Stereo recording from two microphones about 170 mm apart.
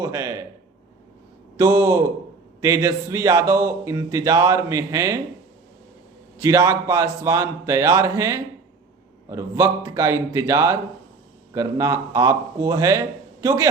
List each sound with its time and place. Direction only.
0.0 s speech: 20° right (ahead or behind)
1.5 s speech: 20° right (ahead or behind)
6.4 s speech: 20° right (ahead or behind)